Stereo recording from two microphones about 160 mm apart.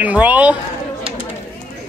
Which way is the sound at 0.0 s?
10° right (ahead or behind).